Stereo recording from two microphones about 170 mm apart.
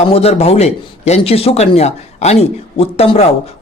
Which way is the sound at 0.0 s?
35° left (ahead or behind).